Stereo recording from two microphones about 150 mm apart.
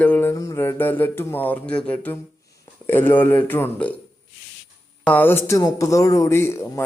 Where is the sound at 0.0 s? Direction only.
10° left (ahead or behind).